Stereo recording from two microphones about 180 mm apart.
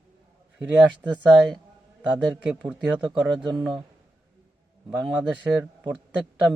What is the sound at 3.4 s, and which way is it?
Speech, 25° right (ahead or behind).